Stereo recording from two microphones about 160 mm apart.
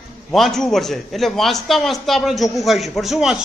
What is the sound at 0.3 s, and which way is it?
A man's voice, centre (ahead or behind).